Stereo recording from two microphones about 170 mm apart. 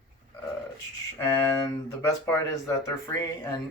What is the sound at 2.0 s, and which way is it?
Speech, 15° left (ahead or behind).